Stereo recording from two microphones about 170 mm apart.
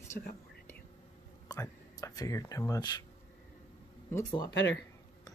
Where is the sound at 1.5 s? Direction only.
20° left (ahead or behind).